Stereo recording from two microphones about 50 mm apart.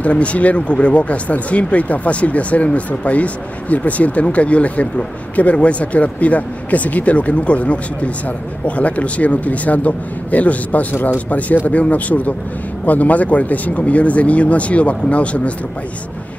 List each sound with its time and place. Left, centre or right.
0.0 s speech: left